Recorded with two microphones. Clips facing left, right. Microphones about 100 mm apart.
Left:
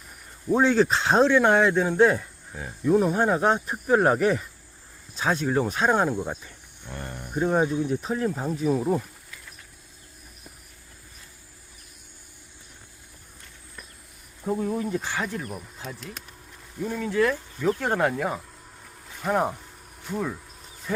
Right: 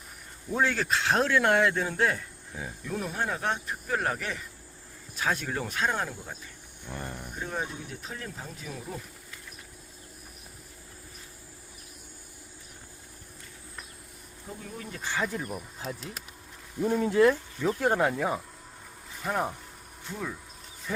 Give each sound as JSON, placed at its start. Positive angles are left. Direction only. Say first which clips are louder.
{"t": 0.5, "sound": "speech", "louder": "left 7 dB", "side_deg": 20}
{"t": 1.3, "sound": "speech", "louder": "left 5 dB", "side_deg": 15}
{"t": 5.1, "sound": "speech", "louder": "left 6 dB", "side_deg": 20}
{"t": 5.7, "sound": "speech", "louder": "left 5 dB", "side_deg": 30}
{"t": 6.1, "sound": "speech", "louder": "left 12 dB", "side_deg": 60}
{"t": 6.8, "sound": "speech", "louder": "left 1 dB", "side_deg": -10}
{"t": 7.3, "sound": "speech", "louder": "left 13 dB", "side_deg": 55}
{"t": 14.5, "sound": "speech", "louder": "left 16 dB", "side_deg": 65}
{"t": 14.8, "sound": "speech", "louder": "left 4 dB", "side_deg": 10}
{"t": 15.3, "sound": "speech", "louder": "left 1 dB", "side_deg": -5}
{"t": 16.8, "sound": "speech", "louder": "right 2 dB", "side_deg": -25}
{"t": 17.6, "sound": "speech", "louder": "left 4 dB", "side_deg": -15}
{"t": 18.0, "sound": "speech", "louder": "left 2 dB", "side_deg": 0}